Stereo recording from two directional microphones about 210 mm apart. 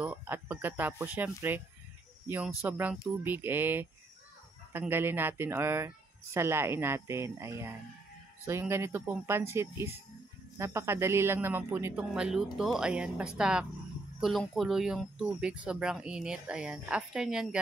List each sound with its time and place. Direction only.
0.0 s speech: 10° right (ahead or behind)